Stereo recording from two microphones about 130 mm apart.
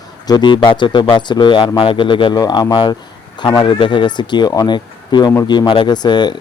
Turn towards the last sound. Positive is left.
turn(degrees=35)  # may be behind; listen again after turning